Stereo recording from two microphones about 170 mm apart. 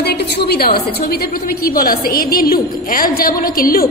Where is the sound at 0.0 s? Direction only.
75° left (ahead or behind).